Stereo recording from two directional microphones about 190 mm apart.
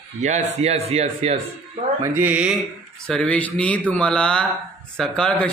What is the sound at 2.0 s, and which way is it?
Speech, 10° right (ahead or behind).